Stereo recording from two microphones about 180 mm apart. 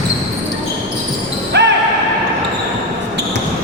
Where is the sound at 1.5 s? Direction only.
70° right (ahead or behind).